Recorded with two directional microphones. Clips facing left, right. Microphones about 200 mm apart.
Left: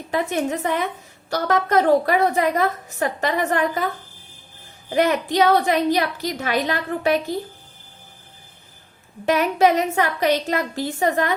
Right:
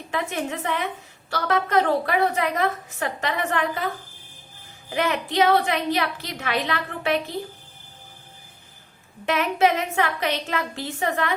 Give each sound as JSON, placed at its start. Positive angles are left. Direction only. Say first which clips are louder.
{"t": 0.1, "sound": "a woman's voice", "louder": "left 5 dB", "side_deg": 40}
{"t": 4.9, "sound": "a woman's voice", "louder": "left 4 dB", "side_deg": 40}
{"t": 9.2, "sound": "a woman's voice", "louder": "left 4 dB", "side_deg": 40}